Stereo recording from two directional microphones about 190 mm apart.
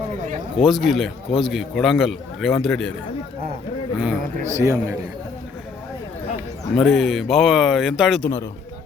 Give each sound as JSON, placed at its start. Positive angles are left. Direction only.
{"t": 0.5, "sound": "a man's voice", "side_deg": 0}
{"t": 3.9, "sound": "a man's voice", "side_deg": -5}
{"t": 4.5, "sound": "a man's voice", "side_deg": -15}
{"t": 6.7, "sound": "a man's voice", "side_deg": 0}